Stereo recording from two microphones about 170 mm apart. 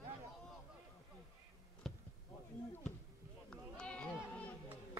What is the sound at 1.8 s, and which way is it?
Basketball bounce, centre (ahead or behind).